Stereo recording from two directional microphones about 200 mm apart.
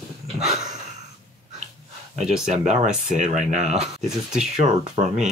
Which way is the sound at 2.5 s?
35° right (ahead or behind).